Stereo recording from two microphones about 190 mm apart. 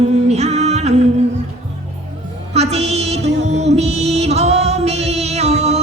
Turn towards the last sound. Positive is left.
turn(degrees=-35)  # may be behind; listen again after turning